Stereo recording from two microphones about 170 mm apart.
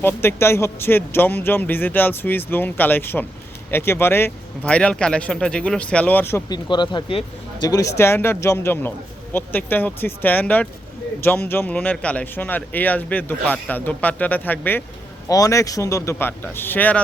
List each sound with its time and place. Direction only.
0.0 s speech: 15° left (ahead or behind)
6.7 s speech: 25° left (ahead or behind)
7.7 s speech: 20° left (ahead or behind)